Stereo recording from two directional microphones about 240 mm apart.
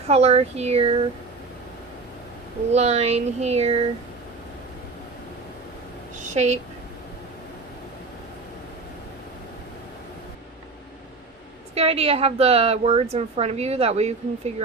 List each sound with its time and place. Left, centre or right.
0.1 s a woman's voice: right
2.7 s a woman's voice: right
6.1 s a sound: right
11.7 s a woman's voice: right